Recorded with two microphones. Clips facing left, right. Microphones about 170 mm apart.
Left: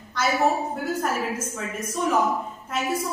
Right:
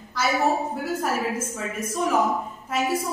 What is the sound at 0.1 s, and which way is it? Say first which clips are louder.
A woman's voice: even; centre (ahead or behind).